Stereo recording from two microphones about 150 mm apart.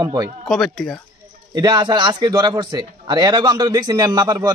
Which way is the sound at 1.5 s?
25° right (ahead or behind).